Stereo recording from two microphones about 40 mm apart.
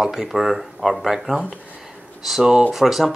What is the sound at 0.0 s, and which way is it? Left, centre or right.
Speech, centre.